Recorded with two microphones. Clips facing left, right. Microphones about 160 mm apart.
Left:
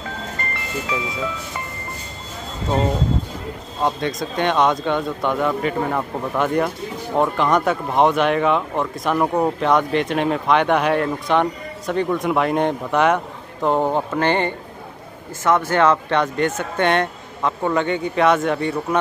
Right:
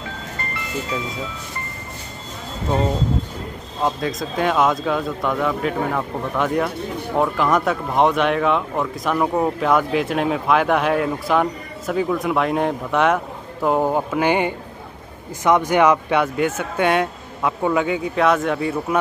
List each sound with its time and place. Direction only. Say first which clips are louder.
1.5 s music: left 2 dB; 90° left
3.8 s speech: even; centre (ahead or behind)